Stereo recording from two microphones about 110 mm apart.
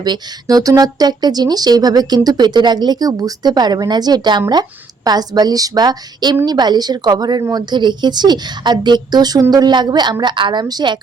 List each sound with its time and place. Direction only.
0.0 s speech: 40° right (ahead or behind)